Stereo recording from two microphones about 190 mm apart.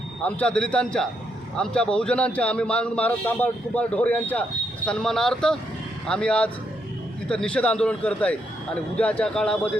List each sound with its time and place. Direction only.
0.2 s a man's voice: 5° left (ahead or behind)